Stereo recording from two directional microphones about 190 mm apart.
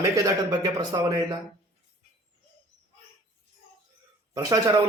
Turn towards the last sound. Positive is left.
turn(degrees=-20)  # may be behind; listen again after turning